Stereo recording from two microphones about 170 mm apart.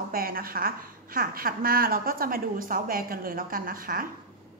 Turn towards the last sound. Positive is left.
turn(degrees=-55)  # may be behind; listen again after turning